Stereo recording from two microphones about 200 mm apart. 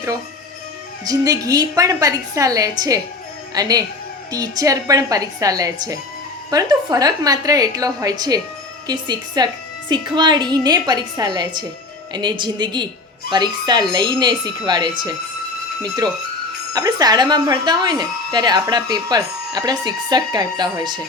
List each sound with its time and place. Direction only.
1.0 s a woman's voice: 15° right (ahead or behind)
16.7 s speech: 20° right (ahead or behind)